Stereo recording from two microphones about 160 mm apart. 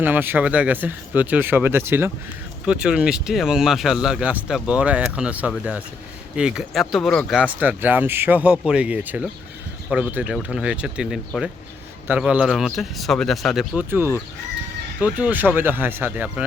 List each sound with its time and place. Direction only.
0.0 s speech: 10° right (ahead or behind)
7.6 s speech: 10° right (ahead or behind)
13.9 s speech: 15° right (ahead or behind)